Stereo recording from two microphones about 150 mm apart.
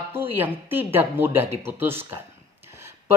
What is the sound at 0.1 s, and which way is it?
Speech, 10° right (ahead or behind).